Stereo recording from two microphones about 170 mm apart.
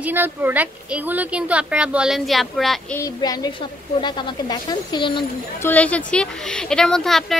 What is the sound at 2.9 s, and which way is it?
Speech, 20° left (ahead or behind).